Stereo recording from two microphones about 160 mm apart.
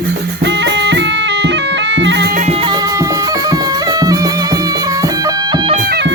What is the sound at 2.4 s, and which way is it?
Music, 35° right (ahead or behind).